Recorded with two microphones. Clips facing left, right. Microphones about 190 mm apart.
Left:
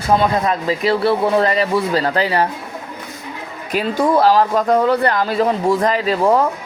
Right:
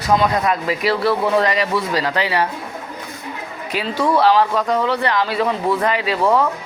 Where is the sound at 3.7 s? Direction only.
45° left (ahead or behind).